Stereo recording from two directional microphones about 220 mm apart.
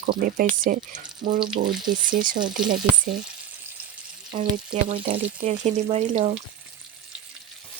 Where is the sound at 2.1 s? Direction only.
40° right (ahead or behind).